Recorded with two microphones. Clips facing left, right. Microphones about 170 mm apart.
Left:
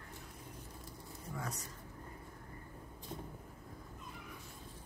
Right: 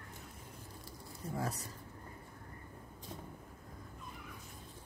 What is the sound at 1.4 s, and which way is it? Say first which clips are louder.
Speech: right 5 dB; 35° right (ahead or behind).